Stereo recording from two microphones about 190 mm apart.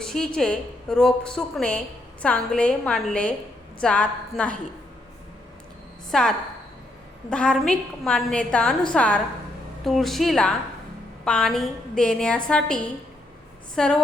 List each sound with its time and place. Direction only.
0.0 s a woman's voice: 5° left (ahead or behind)
6.1 s a woman's voice: centre (ahead or behind)